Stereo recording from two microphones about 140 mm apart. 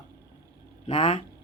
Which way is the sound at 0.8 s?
45° left (ahead or behind).